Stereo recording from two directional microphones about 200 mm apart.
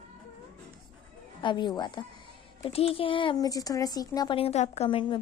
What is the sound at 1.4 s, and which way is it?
Speech, 20° left (ahead or behind).